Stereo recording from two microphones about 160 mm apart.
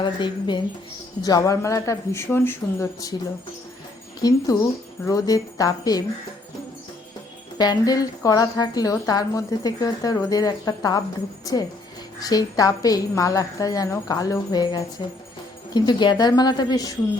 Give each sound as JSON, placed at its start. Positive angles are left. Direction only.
{"t": 0.0, "sound": "speech", "side_deg": 30}
{"t": 4.2, "sound": "speech", "side_deg": 20}
{"t": 7.6, "sound": "speech", "side_deg": 25}